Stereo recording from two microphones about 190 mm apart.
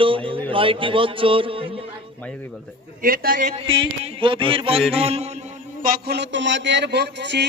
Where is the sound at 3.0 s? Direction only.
50° right (ahead or behind).